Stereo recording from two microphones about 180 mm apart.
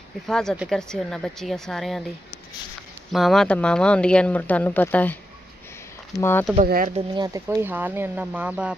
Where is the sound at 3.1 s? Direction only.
Centre (ahead or behind).